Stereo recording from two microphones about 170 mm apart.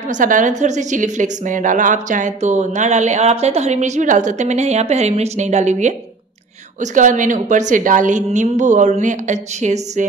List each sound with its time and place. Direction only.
0.1 s a woman's voice: 50° right (ahead or behind)